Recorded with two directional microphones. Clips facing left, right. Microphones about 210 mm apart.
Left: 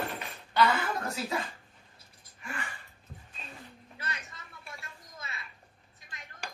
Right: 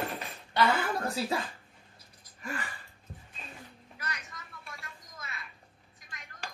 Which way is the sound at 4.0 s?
25° left (ahead or behind).